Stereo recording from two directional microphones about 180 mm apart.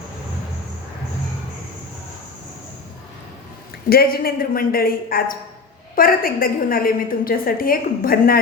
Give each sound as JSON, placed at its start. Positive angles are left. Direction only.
{"t": 3.8, "sound": "a woman's voice", "side_deg": 55}